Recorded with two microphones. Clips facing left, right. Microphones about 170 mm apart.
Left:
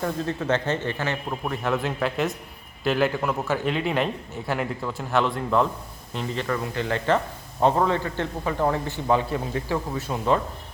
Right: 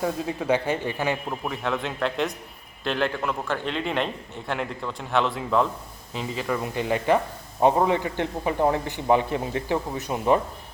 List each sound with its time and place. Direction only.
0.0 s speech: 10° right (ahead or behind)
1.5 s a man's voice: centre (ahead or behind); by 10.4 s 15° right (ahead or behind)